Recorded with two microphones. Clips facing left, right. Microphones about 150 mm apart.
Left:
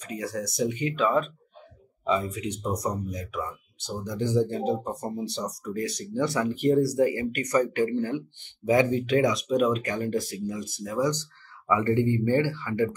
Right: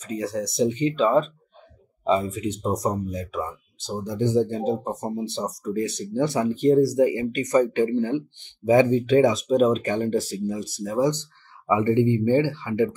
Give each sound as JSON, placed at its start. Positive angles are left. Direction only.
{"t": 0.1, "sound": "speech", "side_deg": -25}